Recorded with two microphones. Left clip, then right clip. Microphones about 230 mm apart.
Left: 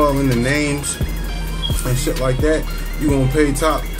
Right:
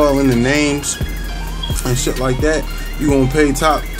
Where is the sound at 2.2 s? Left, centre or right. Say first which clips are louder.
Even; right.